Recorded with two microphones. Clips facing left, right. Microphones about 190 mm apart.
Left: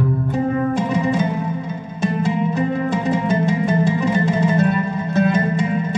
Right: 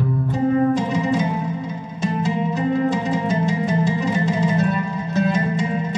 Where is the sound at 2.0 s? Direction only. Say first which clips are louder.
Left 2 dB; 55° left (ahead or behind).